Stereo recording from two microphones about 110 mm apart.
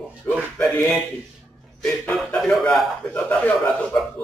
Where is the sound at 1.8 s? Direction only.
5° left (ahead or behind).